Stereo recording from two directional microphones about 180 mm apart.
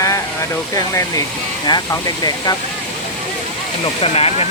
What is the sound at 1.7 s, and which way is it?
Speech, 20° left (ahead or behind).